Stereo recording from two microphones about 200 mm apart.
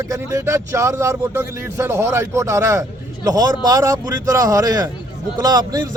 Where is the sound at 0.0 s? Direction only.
15° right (ahead or behind).